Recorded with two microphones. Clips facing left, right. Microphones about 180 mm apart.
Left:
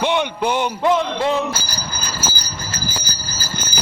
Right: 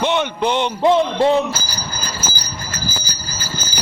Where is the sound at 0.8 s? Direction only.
30° right (ahead or behind).